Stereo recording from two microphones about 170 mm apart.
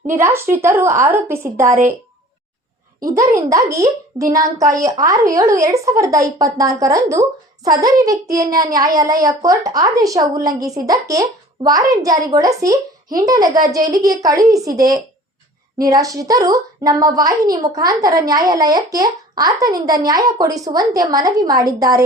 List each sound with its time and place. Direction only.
0.1 s a woman's voice: 15° right (ahead or behind)
1.6 s a woman's voice: 50° right (ahead or behind)
3.0 s a woman's voice: 20° right (ahead or behind)